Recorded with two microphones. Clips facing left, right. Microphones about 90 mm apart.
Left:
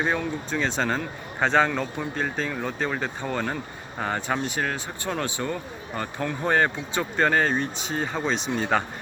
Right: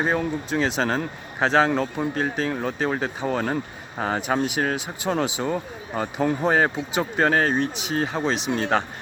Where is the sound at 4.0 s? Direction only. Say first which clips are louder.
Right 4 dB; 15° right (ahead or behind).